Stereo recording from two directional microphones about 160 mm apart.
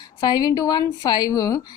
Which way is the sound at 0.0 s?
25° left (ahead or behind).